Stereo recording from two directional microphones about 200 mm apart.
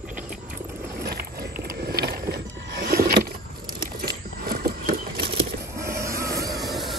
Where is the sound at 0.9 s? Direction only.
50° right (ahead or behind).